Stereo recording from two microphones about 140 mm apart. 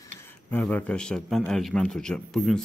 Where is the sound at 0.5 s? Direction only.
10° left (ahead or behind).